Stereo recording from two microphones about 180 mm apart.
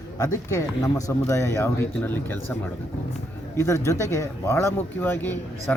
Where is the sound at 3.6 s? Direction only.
15° left (ahead or behind).